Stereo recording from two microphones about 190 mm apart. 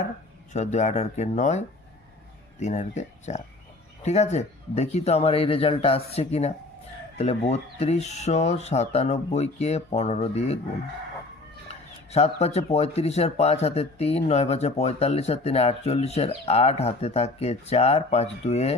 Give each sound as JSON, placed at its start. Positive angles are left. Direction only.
{"t": 0.5, "sound": "speech", "side_deg": 40}
{"t": 12.1, "sound": "speech", "side_deg": 35}